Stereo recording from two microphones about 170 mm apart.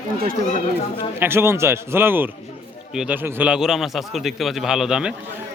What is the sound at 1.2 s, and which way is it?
A man's voice, 15° right (ahead or behind).